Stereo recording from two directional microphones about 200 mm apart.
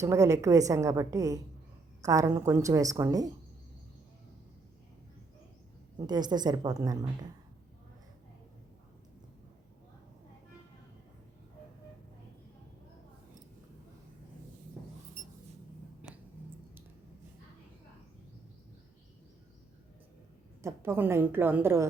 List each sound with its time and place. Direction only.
0.0 s a woman's voice: 15° right (ahead or behind)
6.1 s a woman's voice: 20° right (ahead or behind)
16.0 s a sound: 10° right (ahead or behind)
20.6 s a woman's voice: 15° right (ahead or behind)